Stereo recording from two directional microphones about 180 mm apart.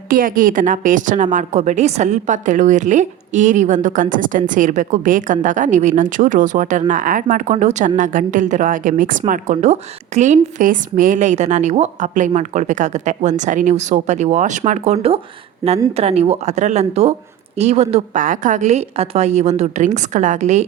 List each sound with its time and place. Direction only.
0.1 s a woman's voice: 50° right (ahead or behind)